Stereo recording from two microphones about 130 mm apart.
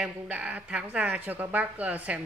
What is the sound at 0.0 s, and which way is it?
Speech, 10° right (ahead or behind).